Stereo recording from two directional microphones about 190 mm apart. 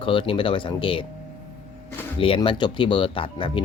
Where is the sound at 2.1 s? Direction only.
30° left (ahead or behind).